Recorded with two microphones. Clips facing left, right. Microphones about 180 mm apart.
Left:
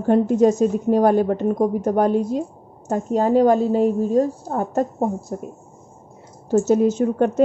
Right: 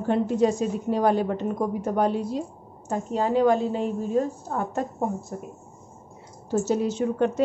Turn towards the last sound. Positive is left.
turn(degrees=45)  # may be behind; listen again after turning